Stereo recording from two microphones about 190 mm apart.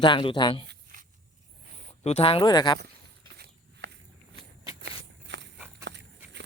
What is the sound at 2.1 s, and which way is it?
Speech, 30° left (ahead or behind).